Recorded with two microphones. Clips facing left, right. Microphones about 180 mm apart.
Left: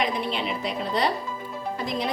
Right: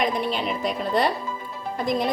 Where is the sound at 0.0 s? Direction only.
45° right (ahead or behind).